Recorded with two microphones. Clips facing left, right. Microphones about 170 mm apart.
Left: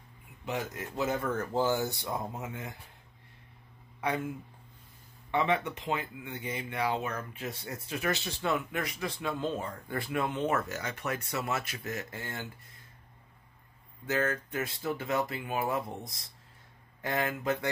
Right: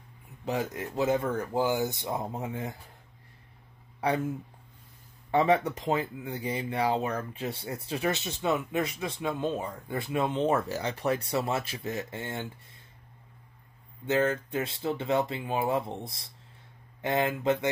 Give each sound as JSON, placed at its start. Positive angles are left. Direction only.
{"t": 0.5, "sound": "speech", "side_deg": -30}
{"t": 1.3, "sound": "speech", "side_deg": -15}
{"t": 4.0, "sound": "speech", "side_deg": -35}
{"t": 5.3, "sound": "speech", "side_deg": -40}
{"t": 14.0, "sound": "speech", "side_deg": -30}